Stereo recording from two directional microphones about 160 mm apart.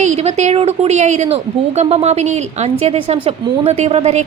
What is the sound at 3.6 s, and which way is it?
Speech, 40° right (ahead or behind).